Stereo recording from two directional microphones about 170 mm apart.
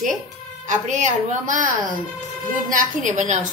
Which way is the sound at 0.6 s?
45° right (ahead or behind).